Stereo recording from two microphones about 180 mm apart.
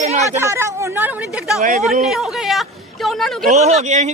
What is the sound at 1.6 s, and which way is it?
Speech, 45° right (ahead or behind).